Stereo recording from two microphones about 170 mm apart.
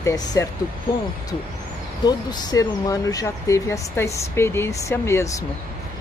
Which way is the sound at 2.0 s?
20° left (ahead or behind).